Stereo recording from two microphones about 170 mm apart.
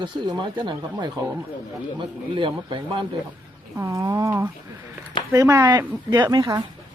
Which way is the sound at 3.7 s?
20° right (ahead or behind).